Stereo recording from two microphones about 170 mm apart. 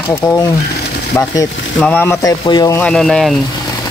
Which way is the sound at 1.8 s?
10° left (ahead or behind).